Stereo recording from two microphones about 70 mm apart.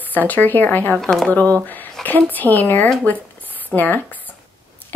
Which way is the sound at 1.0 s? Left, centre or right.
Centre.